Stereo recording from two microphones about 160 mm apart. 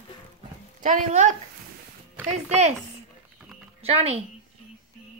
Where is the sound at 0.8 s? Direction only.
50° right (ahead or behind).